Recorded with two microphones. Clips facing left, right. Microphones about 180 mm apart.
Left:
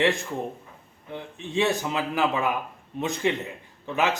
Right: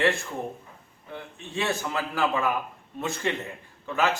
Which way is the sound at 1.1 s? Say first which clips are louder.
Left 5 dB; 20° left (ahead or behind).